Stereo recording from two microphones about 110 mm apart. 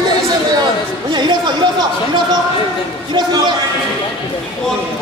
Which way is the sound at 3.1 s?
40° right (ahead or behind).